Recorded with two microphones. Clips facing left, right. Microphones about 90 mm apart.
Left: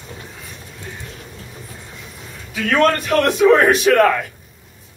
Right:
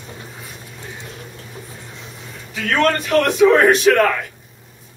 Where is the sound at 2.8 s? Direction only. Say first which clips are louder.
Even; 5° left (ahead or behind).